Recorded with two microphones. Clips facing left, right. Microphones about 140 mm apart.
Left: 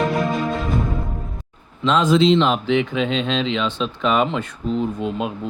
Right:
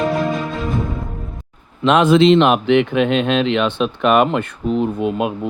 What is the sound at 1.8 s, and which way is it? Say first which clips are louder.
Speech: right 4 dB; 65° right (ahead or behind).